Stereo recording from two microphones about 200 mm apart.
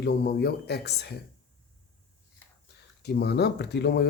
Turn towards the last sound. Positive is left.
turn(degrees=55)  # may be behind; listen again after turning